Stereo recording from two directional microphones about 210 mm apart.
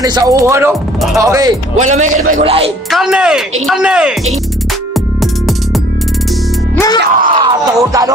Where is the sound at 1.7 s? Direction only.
35° right (ahead or behind).